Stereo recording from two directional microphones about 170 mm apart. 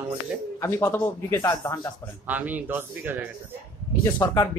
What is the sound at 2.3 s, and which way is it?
Speech, 10° right (ahead or behind).